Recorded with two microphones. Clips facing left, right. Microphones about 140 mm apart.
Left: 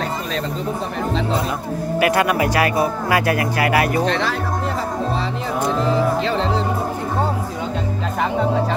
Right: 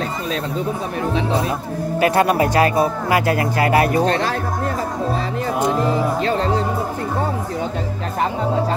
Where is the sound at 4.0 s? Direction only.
45° right (ahead or behind).